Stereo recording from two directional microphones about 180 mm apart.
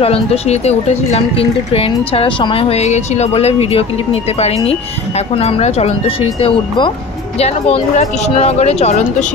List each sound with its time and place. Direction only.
0.0 s speech: 35° left (ahead or behind)